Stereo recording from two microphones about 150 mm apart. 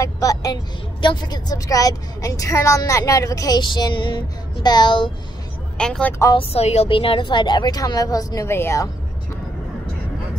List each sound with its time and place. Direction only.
0.0 s a woman's voice: 25° left (ahead or behind)
5.8 s speech: 5° left (ahead or behind)
6.3 s a woman's voice: 45° left (ahead or behind); by 8.9 s 20° left (ahead or behind)